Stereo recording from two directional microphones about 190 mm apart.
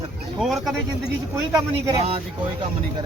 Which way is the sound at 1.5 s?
25° right (ahead or behind).